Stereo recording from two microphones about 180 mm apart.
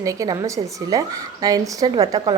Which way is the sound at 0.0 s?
20° right (ahead or behind).